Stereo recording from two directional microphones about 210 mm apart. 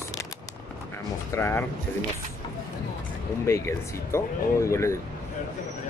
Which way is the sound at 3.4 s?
15° left (ahead or behind).